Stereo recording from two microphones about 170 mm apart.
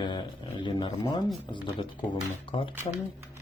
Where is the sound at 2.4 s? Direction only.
30° left (ahead or behind).